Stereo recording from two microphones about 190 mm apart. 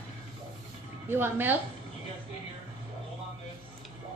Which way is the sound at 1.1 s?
10° right (ahead or behind).